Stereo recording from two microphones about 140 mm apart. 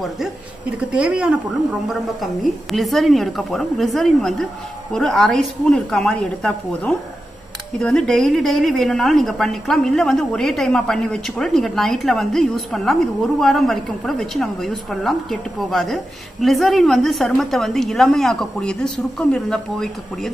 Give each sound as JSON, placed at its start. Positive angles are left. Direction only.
{"t": 0.0, "sound": "a woman's voice", "side_deg": -5}